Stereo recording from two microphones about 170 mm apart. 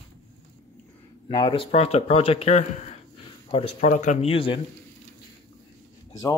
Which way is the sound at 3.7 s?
50° left (ahead or behind).